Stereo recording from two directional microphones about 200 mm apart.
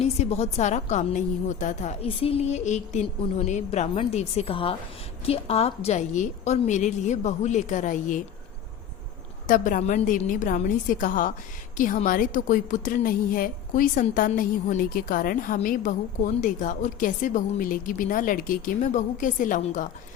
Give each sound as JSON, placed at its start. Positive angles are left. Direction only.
{"t": 0.0, "sound": "a woman's voice", "side_deg": 30}
{"t": 9.5, "sound": "a woman's voice", "side_deg": 40}